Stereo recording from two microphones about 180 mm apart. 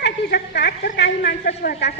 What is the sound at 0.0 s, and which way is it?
A woman's voice, 65° left (ahead or behind).